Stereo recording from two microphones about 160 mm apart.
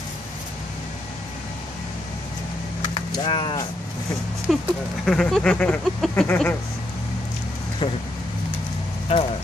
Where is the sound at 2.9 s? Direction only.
30° left (ahead or behind).